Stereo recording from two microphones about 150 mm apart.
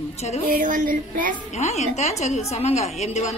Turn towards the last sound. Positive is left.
turn(degrees=50)  # may be behind; listen again after turning